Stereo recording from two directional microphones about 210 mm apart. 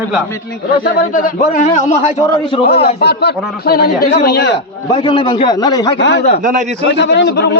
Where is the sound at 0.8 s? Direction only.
40° left (ahead or behind).